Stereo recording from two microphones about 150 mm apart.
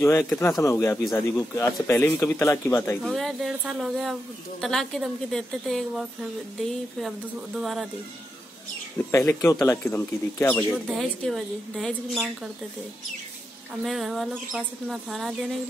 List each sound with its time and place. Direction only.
0.0 s speech: 15° left (ahead or behind)
3.0 s speech: centre (ahead or behind)
8.9 s speech: 15° left (ahead or behind)
10.7 s speech: centre (ahead or behind)
13.8 s speech: centre (ahead or behind)